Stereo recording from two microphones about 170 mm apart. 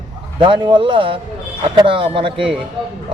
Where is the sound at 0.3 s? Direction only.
30° right (ahead or behind).